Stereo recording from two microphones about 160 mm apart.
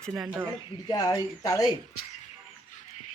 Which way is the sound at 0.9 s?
25° left (ahead or behind).